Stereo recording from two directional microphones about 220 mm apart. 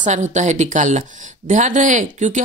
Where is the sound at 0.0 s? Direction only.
35° right (ahead or behind).